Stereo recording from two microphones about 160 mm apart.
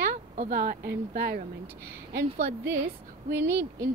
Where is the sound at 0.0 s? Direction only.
55° right (ahead or behind); by 1.4 s 75° right (ahead or behind).